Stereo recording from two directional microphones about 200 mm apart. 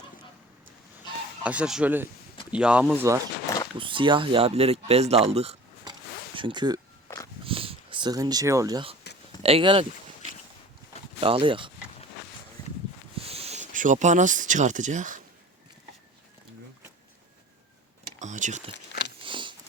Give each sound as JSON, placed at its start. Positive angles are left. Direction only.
{"t": 1.5, "sound": "speech", "side_deg": -5}
{"t": 3.8, "sound": "speech", "side_deg": -25}
{"t": 7.4, "sound": "a sound", "side_deg": -25}
{"t": 9.4, "sound": "speech", "side_deg": -30}
{"t": 11.2, "sound": "speech", "side_deg": -25}
{"t": 13.2, "sound": "speech", "side_deg": -30}
{"t": 18.2, "sound": "a sound", "side_deg": -40}
{"t": 18.7, "sound": "a sound", "side_deg": 60}
{"t": 19.2, "sound": "biting", "side_deg": -25}